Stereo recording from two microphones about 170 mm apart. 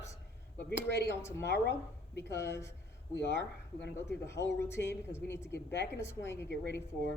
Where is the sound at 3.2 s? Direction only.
80° left.